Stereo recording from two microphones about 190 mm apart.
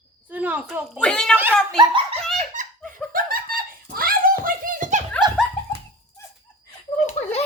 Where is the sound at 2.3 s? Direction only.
40° right (ahead or behind).